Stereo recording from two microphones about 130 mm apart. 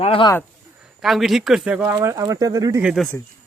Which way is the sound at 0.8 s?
Centre (ahead or behind).